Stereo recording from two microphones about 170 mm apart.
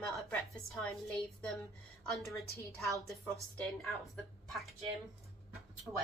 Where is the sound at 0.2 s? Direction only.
5° left (ahead or behind).